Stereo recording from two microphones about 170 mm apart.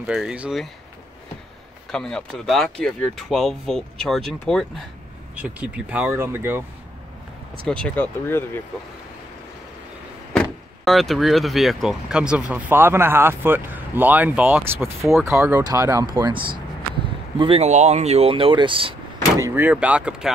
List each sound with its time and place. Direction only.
0.0 s speech: 5° right (ahead or behind)
1.9 s speech: 5° left (ahead or behind); by 6.6 s 15° right (ahead or behind)
7.6 s speech: 5° left (ahead or behind)
10.3 s speech: centre (ahead or behind); by 19.4 s 30° right (ahead or behind)
19.4 s speech: 10° right (ahead or behind)